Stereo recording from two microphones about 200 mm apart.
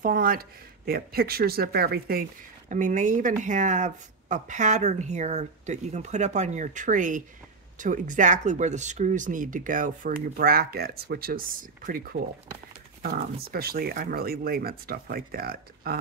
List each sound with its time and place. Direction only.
0.0 s speech: 45° right (ahead or behind)